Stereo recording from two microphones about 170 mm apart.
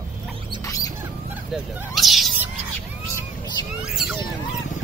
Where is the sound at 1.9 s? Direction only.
Centre (ahead or behind).